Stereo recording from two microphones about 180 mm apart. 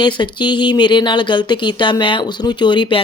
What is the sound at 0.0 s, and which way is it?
Speech, 25° left (ahead or behind).